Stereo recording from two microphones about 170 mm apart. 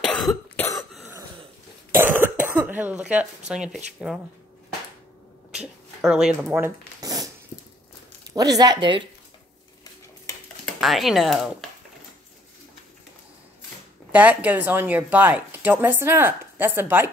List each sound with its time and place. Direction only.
0.0 s cough: 5° left (ahead or behind)
1.9 s speech: 15° right (ahead or behind)
5.5 s a sound: 5° right (ahead or behind)
6.5 s a sound: 20° right (ahead or behind)
8.3 s speech: 20° right (ahead or behind)
10.6 s speech: centre (ahead or behind)
14.1 s speech: 10° right (ahead or behind)